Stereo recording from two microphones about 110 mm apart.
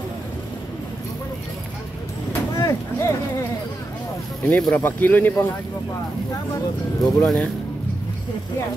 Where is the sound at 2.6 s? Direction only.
25° left (ahead or behind).